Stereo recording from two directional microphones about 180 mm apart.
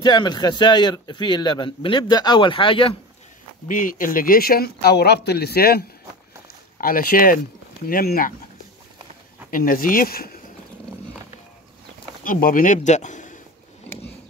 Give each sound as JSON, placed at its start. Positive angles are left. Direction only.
{"t": 0.0, "sound": "speech", "side_deg": 25}
{"t": 3.6, "sound": "speech", "side_deg": 50}
{"t": 9.5, "sound": "speech", "side_deg": 50}
{"t": 12.3, "sound": "speech", "side_deg": 50}